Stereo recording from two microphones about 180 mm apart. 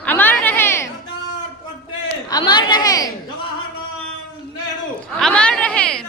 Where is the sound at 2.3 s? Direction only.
25° left (ahead or behind).